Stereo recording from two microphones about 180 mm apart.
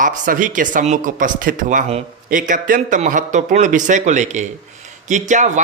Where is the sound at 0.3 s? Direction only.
45° right (ahead or behind).